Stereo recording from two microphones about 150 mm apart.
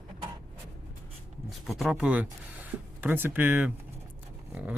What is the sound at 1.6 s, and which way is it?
Speech, centre (ahead or behind).